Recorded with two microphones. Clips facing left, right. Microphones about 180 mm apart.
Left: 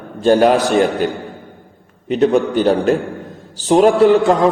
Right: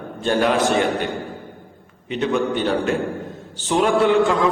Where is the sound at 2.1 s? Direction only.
40° left (ahead or behind).